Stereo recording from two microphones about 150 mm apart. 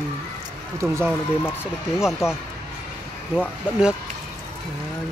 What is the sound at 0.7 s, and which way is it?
Speech, 15° right (ahead or behind).